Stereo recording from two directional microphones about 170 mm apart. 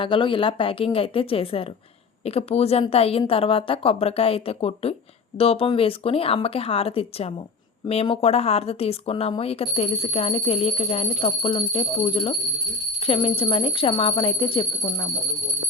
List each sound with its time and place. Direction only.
0.0 s speech: 30° left (ahead or behind)